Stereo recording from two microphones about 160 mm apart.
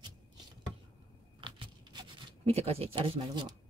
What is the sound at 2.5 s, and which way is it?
Speech, 40° right (ahead or behind).